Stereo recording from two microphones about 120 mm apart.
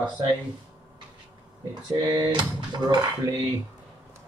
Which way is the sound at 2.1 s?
35° right (ahead or behind).